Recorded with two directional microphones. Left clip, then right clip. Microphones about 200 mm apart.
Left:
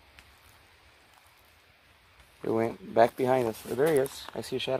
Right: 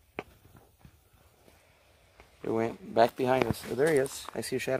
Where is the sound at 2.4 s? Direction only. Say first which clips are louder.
Left 2 dB; 20° left (ahead or behind).